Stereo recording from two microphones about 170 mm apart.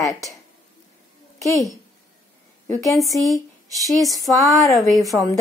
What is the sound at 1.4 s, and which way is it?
Speech, 20° left (ahead or behind).